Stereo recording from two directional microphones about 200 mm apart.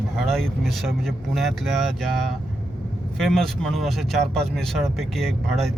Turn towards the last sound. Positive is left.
turn(degrees=0)  # may be behind; listen again after turning